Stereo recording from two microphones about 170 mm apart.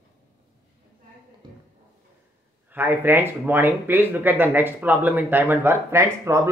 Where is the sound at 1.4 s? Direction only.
25° right (ahead or behind).